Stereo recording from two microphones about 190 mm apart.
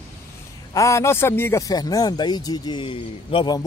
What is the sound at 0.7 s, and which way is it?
Speech, 15° left (ahead or behind).